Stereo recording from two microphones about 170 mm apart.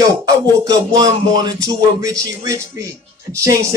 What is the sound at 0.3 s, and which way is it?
Music, 20° right (ahead or behind).